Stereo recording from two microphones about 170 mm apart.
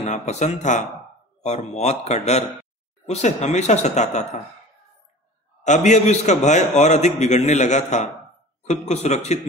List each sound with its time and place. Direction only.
0.0 s a man's voice: 40° left (ahead or behind)
5.6 s a man's voice: 45° left (ahead or behind)